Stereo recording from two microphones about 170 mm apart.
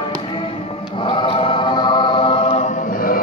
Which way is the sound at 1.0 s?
30° left (ahead or behind).